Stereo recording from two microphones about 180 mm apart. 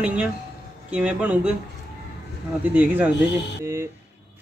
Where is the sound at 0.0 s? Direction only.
5° right (ahead or behind).